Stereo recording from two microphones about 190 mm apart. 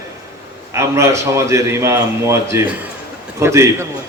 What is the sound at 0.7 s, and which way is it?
A man's voice, 15° right (ahead or behind).